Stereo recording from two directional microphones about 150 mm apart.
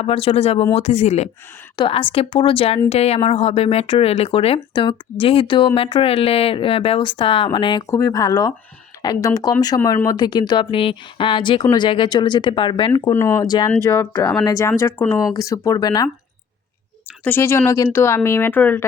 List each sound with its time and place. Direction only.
0.0 s speech: 40° left (ahead or behind)
1.7 s speech: 35° left (ahead or behind)
7.9 s speech: 20° left (ahead or behind); by 12.9 s 35° left (ahead or behind)
13.1 s speech: 20° left (ahead or behind)
13.8 s speech: 15° left (ahead or behind)
17.2 s speech: 15° left (ahead or behind)